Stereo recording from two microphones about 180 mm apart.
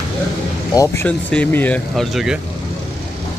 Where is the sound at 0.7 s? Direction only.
20° left (ahead or behind).